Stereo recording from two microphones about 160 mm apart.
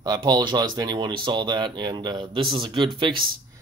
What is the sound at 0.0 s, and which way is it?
Speech, 25° right (ahead or behind).